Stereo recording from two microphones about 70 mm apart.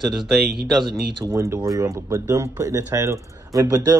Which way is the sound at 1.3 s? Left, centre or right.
Right.